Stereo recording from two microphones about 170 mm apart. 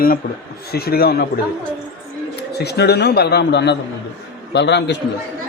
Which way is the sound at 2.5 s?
75° left (ahead or behind).